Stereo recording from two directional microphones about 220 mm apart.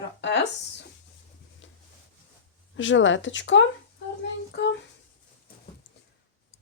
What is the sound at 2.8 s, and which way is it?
Speech, 60° left (ahead or behind).